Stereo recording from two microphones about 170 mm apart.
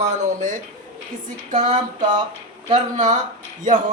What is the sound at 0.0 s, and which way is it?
Speech, 45° right (ahead or behind).